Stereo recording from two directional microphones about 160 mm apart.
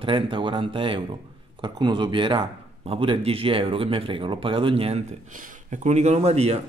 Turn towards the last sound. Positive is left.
turn(degrees=-40)  # may be behind; listen again after turning